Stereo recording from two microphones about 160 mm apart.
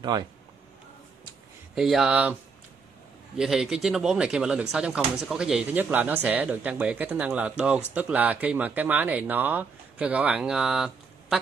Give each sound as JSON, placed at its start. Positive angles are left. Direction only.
{"t": 1.8, "sound": "speech", "side_deg": 0}
{"t": 3.3, "sound": "speech", "side_deg": 0}